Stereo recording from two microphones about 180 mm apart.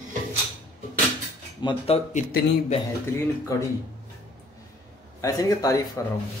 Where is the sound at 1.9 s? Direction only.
40° left (ahead or behind).